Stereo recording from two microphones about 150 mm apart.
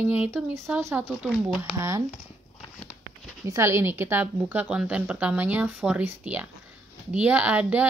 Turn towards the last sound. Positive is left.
turn(degrees=-10)  # may be behind; listen again after turning